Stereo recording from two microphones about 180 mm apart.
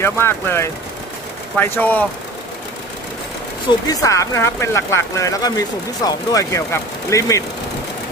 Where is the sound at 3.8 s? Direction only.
20° left (ahead or behind).